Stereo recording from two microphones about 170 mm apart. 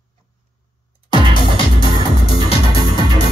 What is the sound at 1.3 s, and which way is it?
Music, 30° left (ahead or behind).